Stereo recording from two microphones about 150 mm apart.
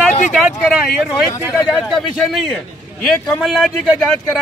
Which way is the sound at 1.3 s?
20° left (ahead or behind).